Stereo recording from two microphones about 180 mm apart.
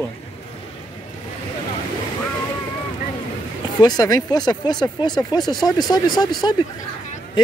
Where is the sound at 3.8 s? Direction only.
20° left (ahead or behind).